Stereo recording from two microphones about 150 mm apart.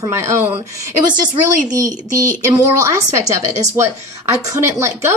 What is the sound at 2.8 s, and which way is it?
A woman's voice, 20° right (ahead or behind).